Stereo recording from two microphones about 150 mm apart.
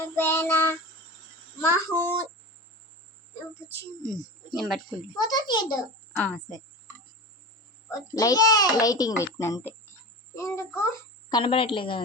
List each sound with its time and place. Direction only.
0.2 s child singing: 15° left (ahead or behind)
4.5 s speech: centre (ahead or behind)
5.1 s a child's voice: 25° left (ahead or behind)
6.2 s a woman's voice: 10° left (ahead or behind)
7.9 s a child's voice: 25° left (ahead or behind)
11.3 s a woman's voice: 30° left (ahead or behind)